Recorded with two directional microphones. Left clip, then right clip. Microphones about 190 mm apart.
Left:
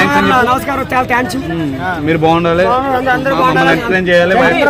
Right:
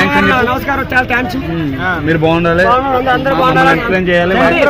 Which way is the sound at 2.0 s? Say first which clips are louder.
Left 2 dB; 5° right (ahead or behind).